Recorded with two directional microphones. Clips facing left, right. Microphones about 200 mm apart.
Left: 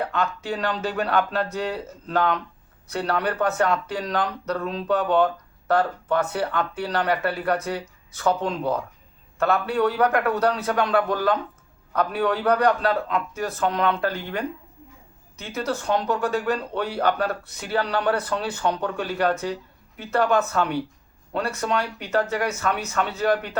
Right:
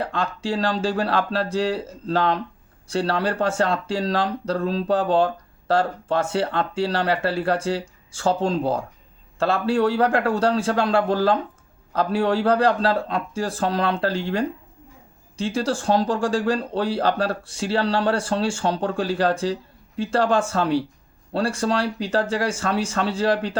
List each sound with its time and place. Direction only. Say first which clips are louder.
0.0 s speech: even; 30° right (ahead or behind)